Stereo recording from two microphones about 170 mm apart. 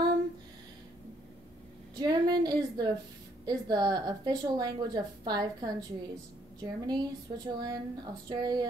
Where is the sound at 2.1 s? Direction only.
25° right (ahead or behind).